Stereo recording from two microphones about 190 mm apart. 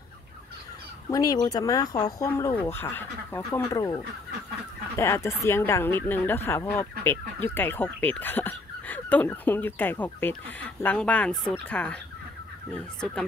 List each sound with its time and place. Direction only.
1.1 s speech: 20° left (ahead or behind)